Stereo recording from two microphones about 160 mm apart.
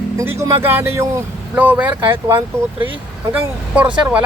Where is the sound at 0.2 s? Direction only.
20° right (ahead or behind).